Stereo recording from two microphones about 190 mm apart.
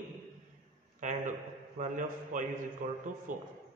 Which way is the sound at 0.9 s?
40° right (ahead or behind).